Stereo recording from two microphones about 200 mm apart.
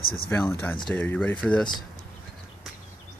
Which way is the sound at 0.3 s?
10° left (ahead or behind).